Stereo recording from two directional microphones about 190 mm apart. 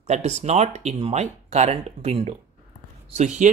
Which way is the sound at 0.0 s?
35° right (ahead or behind).